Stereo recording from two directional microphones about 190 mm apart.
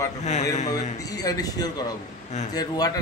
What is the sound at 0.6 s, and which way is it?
A man's voice, 20° left (ahead or behind).